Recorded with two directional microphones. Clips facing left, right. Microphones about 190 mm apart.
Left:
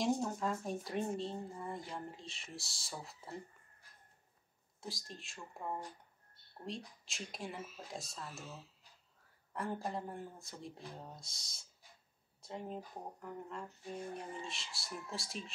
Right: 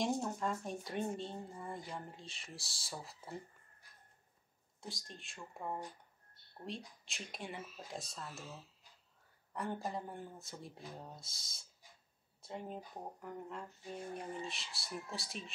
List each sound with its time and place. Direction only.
0.0 s speech: centre (ahead or behind)
4.7 s speech: centre (ahead or behind)
6.6 s speech: centre (ahead or behind)